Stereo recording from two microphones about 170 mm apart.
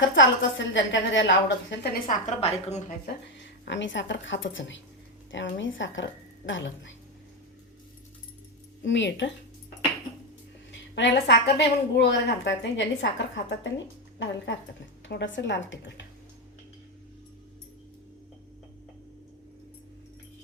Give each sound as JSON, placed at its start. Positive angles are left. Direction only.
{"t": 0.0, "sound": "a woman's voice", "side_deg": 90}
{"t": 2.0, "sound": "a woman's voice", "side_deg": 40}
{"t": 3.1, "sound": "a woman's voice", "side_deg": 90}
{"t": 8.8, "sound": "a woman's voice", "side_deg": 90}
{"t": 10.7, "sound": "a woman's voice", "side_deg": 90}